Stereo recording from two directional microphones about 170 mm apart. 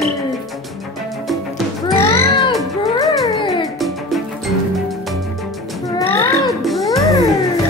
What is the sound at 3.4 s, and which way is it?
Music, 20° left (ahead or behind).